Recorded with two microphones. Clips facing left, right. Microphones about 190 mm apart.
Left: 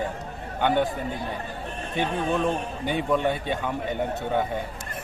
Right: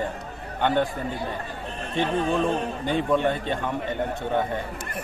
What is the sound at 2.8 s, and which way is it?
Speech, 10° left (ahead or behind).